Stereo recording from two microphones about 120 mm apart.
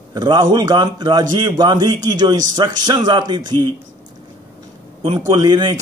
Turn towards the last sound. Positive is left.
turn(degrees=-35)  # may be behind; listen again after turning